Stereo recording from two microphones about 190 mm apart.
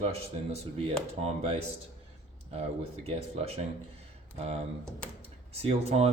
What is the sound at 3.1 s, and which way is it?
Speech, 30° right (ahead or behind).